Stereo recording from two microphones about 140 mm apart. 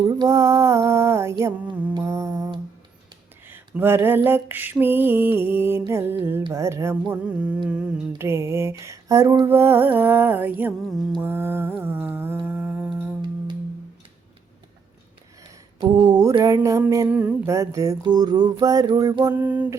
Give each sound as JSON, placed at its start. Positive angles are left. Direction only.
{"t": 0.0, "sound": "music", "side_deg": -30}
{"t": 1.9, "sound": "humming", "side_deg": -20}
{"t": 3.8, "sound": "mantra", "side_deg": -15}
{"t": 5.8, "sound": "humming", "side_deg": -20}
{"t": 9.5, "sound": "mantra", "side_deg": -15}
{"t": 12.5, "sound": "humming", "side_deg": -10}
{"t": 15.8, "sound": "humming", "side_deg": -30}
{"t": 17.1, "sound": "humming", "side_deg": -10}
{"t": 19.4, "sound": "mantra", "side_deg": -10}